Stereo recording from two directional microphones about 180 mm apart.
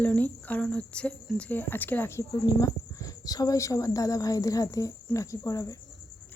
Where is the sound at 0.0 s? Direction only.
10° left (ahead or behind).